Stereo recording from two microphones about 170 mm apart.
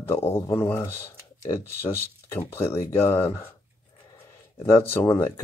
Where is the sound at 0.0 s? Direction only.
15° left (ahead or behind).